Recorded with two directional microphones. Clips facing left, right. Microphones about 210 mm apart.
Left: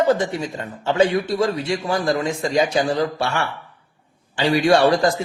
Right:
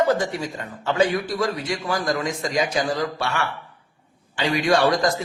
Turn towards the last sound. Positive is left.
turn(degrees=30)  # may be behind; listen again after turning